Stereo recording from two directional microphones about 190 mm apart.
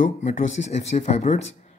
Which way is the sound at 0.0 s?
40° left (ahead or behind).